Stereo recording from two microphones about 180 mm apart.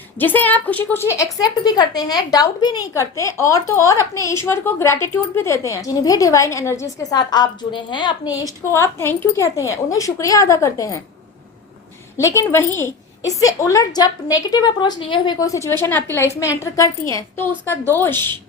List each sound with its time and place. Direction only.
0.2 s a woman's voice: 10° left (ahead or behind)
12.1 s a woman's voice: 15° left (ahead or behind)